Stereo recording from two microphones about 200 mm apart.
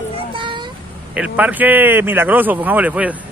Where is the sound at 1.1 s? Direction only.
5° right (ahead or behind).